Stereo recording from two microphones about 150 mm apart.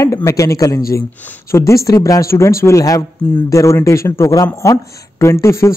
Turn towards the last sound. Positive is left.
turn(degrees=20)  # may be behind; listen again after turning